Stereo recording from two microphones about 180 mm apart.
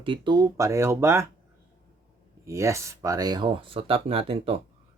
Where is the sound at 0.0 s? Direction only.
25° right (ahead or behind).